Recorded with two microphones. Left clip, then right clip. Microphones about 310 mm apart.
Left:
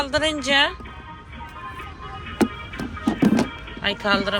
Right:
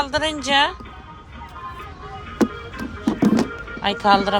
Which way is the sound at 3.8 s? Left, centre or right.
Centre.